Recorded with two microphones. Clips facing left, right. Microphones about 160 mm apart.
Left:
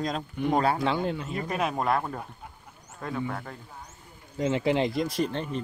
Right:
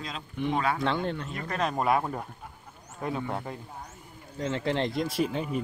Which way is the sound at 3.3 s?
15° right (ahead or behind).